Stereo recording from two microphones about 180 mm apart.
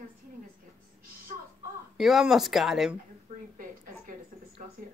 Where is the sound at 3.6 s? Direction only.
50° right (ahead or behind).